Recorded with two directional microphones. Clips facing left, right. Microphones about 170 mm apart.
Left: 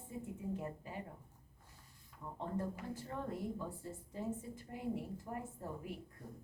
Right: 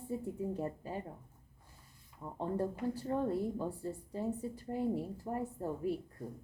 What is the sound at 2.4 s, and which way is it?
A woman's voice, 35° right (ahead or behind).